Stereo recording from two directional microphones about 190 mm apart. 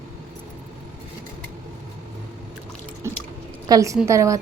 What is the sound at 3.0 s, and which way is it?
Chewing, 15° right (ahead or behind).